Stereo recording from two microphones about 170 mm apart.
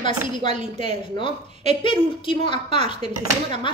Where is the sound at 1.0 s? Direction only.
30° left (ahead or behind).